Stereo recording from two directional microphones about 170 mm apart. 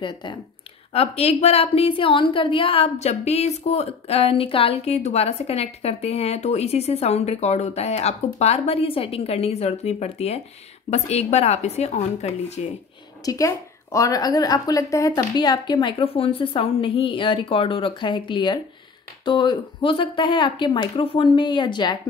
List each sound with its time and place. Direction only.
0.0 s a woman's voice: 25° left (ahead or behind)
13.2 s a woman's voice: 20° left (ahead or behind)